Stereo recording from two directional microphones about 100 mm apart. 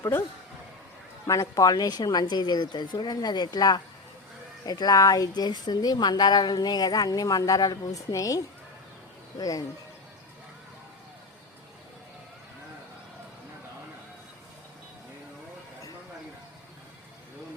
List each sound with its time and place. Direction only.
1.3 s a woman's voice: 35° left (ahead or behind)
9.4 s a woman's voice: 35° left (ahead or behind)